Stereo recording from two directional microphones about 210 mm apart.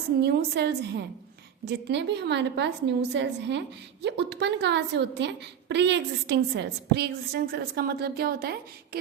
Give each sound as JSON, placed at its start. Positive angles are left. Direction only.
{"t": 0.2, "sound": "a woman's voice", "side_deg": -50}